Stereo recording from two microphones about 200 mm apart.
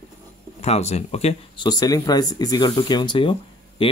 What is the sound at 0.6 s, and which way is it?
Speech, 35° left (ahead or behind).